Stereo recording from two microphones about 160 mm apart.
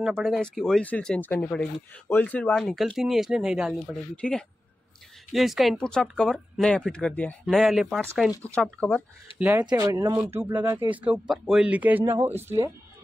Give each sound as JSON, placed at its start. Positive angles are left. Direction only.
{"t": 0.0, "sound": "speech", "side_deg": 0}
{"t": 9.4, "sound": "speech", "side_deg": -10}